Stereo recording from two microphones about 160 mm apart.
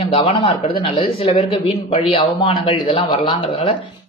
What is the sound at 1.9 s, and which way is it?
Speech, 35° left (ahead or behind).